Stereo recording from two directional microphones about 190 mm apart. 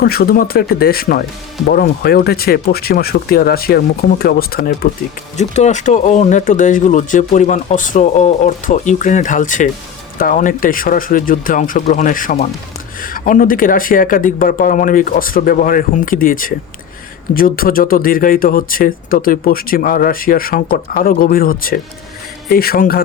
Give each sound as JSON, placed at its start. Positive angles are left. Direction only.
{"t": 0.0, "sound": "speech", "side_deg": 55}
{"t": 5.4, "sound": "speech", "side_deg": 35}